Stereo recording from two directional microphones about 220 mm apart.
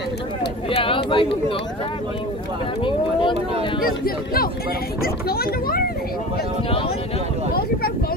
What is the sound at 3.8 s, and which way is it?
A child's voice, 40° left (ahead or behind).